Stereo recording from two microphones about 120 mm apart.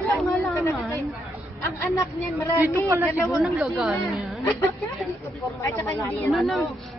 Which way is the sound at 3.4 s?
Centre (ahead or behind).